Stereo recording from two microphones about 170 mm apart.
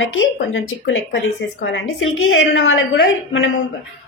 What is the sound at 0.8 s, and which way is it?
Speech, 90° left.